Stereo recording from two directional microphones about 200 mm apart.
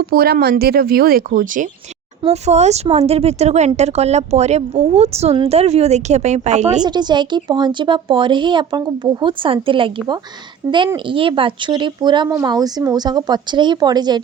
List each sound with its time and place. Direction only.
0.0 s speech: 50° right (ahead or behind)
6.8 s speech: 20° right (ahead or behind)